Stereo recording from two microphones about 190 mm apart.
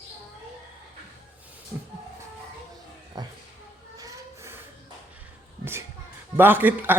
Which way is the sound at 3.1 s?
20° right (ahead or behind).